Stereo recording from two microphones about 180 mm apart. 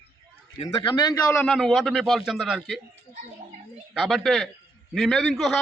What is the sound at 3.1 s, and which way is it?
Speech, 40° right (ahead or behind).